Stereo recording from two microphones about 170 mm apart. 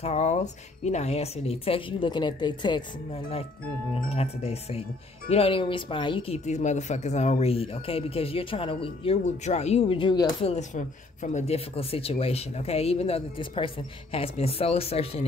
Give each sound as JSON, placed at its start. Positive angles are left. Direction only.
{"t": 0.0, "sound": "speech", "side_deg": 40}
{"t": 3.9, "sound": "speech", "side_deg": 35}
{"t": 10.5, "sound": "speech", "side_deg": 45}